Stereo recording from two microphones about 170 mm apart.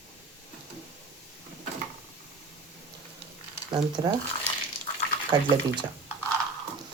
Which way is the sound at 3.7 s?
25° right (ahead or behind).